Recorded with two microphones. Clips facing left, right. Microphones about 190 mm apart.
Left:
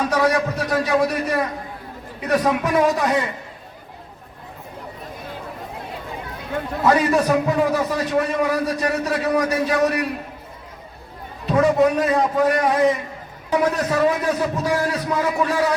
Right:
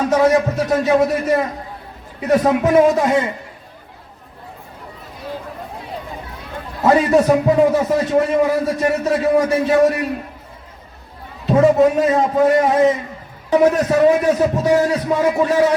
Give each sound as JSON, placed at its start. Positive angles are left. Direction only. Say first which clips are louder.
{"t": 0.1, "sound": "a man's voice", "louder": "right 5 dB", "side_deg": -25}
{"t": 6.8, "sound": "a man's voice", "louder": "right 5 dB", "side_deg": -25}
{"t": 11.4, "sound": "a man's voice", "louder": "right 4 dB", "side_deg": -25}